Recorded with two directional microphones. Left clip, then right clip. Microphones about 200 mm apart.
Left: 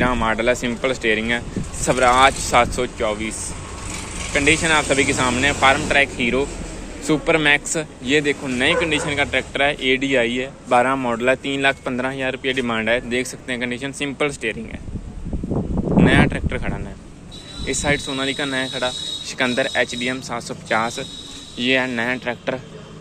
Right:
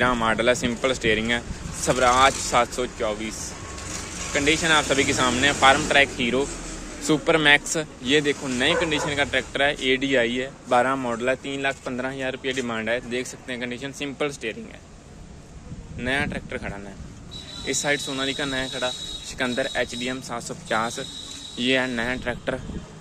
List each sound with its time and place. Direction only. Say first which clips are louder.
0.0 s speech: left 2 dB; 20° right (ahead or behind); by 14.6 s centre (ahead or behind)
16.0 s speech: left 8 dB; centre (ahead or behind); by 22.6 s 15° right (ahead or behind)